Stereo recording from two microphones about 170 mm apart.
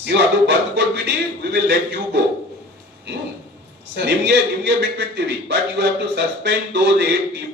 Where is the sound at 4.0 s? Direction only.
85° right.